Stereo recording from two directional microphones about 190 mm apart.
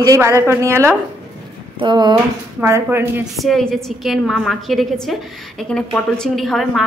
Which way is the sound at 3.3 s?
Centre (ahead or behind).